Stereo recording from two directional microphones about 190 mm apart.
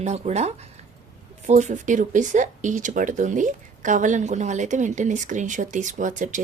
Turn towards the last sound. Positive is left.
turn(degrees=-40)  # may be behind; listen again after turning